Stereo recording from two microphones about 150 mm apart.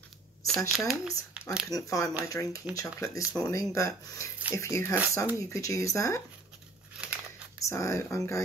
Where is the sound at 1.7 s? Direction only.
20° left (ahead or behind).